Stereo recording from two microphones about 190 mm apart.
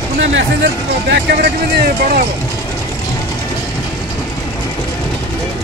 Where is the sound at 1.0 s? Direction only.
60° right (ahead or behind).